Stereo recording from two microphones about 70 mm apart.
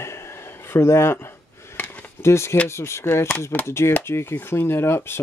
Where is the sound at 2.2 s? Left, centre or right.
Left.